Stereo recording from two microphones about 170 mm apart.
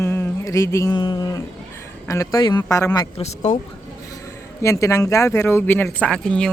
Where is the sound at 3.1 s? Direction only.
40° left (ahead or behind).